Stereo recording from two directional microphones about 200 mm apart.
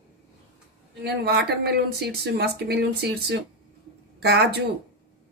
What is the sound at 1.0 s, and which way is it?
Speech, 55° right (ahead or behind).